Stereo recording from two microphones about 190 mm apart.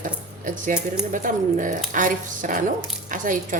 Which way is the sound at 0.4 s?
45° right (ahead or behind).